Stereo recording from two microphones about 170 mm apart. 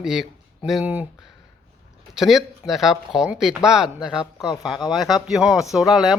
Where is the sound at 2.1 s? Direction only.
Centre (ahead or behind).